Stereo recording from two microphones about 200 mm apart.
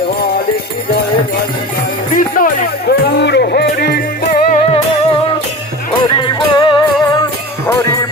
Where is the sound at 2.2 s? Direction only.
45° left (ahead or behind).